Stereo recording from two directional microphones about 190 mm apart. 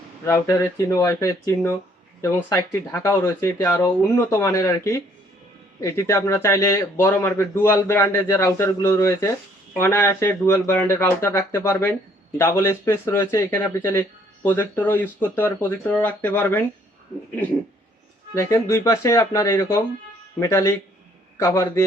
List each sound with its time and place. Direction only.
0.3 s speech: 15° left (ahead or behind)
18.3 s speech: 15° left (ahead or behind)